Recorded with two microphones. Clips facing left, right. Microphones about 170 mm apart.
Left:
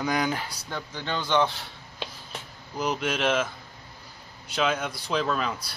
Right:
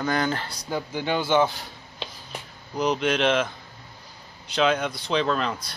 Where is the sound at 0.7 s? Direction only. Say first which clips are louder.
Right 8 dB; 10° right (ahead or behind); by 3.4 s 5° left (ahead or behind).